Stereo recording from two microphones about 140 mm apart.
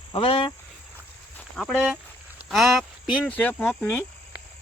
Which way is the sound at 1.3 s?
5° left (ahead or behind).